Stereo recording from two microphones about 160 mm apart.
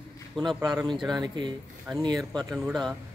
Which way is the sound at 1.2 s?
25° right (ahead or behind).